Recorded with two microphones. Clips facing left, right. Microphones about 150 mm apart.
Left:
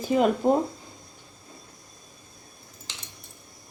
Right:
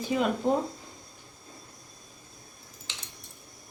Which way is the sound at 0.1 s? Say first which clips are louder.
Left 6 dB; 40° left (ahead or behind).